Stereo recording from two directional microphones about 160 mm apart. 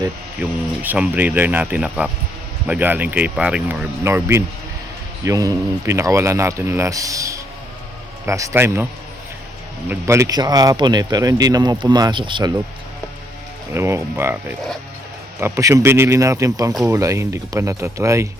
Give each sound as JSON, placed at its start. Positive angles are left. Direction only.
{"t": 0.4, "sound": "speech", "side_deg": -10}
{"t": 9.9, "sound": "speech", "side_deg": -20}
{"t": 13.7, "sound": "speech", "side_deg": -15}